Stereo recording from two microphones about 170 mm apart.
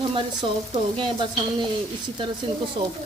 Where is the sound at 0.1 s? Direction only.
30° right (ahead or behind).